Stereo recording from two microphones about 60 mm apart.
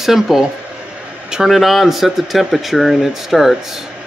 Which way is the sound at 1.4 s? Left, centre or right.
Centre.